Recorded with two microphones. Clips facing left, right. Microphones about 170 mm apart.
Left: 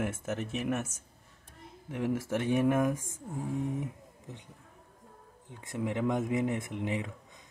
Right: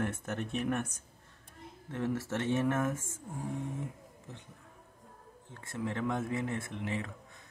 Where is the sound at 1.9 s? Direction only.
10° left (ahead or behind).